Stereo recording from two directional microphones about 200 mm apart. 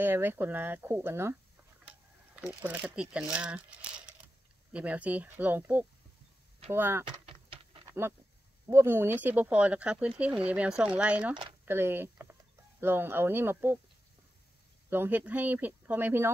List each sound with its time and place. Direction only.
0.0 s speech: 10° right (ahead or behind)
2.4 s speech: 10° right (ahead or behind)
7.2 s a sound: 25° right (ahead or behind)
8.6 s speech: 10° right (ahead or behind)
14.9 s speech: 10° right (ahead or behind)